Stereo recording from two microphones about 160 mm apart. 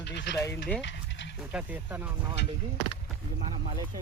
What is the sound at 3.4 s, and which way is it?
Speech, 35° right (ahead or behind).